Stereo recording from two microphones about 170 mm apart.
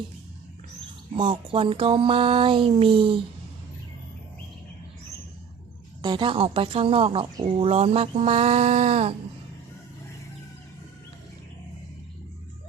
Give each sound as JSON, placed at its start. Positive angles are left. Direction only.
{"t": 1.1, "sound": "a woman's voice", "side_deg": -30}
{"t": 6.0, "sound": "a woman's voice", "side_deg": -25}